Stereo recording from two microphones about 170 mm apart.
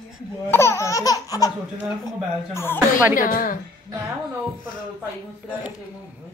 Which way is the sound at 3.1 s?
55° left (ahead or behind).